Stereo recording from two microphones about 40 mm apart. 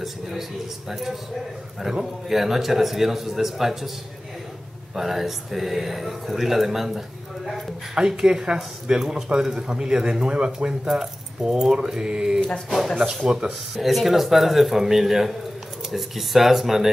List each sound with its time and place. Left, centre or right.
0.0 s a man's voice: centre
4.9 s speech: centre
7.9 s a man's voice: centre
12.4 s speech: left
12.6 s speech: centre
13.2 s a man's voice: centre
13.7 s speech: centre